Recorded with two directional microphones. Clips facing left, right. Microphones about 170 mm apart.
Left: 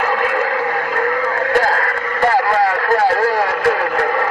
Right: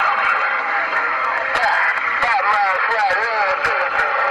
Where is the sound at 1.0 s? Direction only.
45° left (ahead or behind).